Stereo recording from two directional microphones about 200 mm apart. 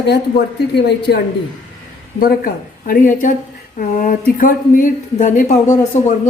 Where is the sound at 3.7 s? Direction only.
40° left (ahead or behind).